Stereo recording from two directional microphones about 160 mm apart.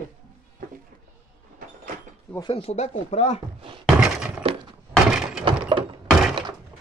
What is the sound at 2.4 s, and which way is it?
Speech, 35° left (ahead or behind).